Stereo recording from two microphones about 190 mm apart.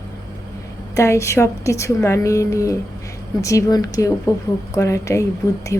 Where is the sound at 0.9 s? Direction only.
15° left (ahead or behind).